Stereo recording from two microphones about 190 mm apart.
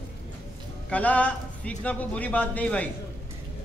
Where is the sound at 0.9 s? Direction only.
5° left (ahead or behind).